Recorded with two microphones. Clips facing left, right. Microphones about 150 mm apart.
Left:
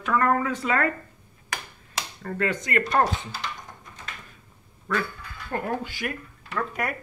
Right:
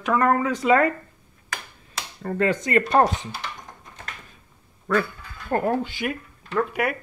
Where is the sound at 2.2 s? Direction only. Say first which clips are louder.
Right 5 dB; 25° right (ahead or behind).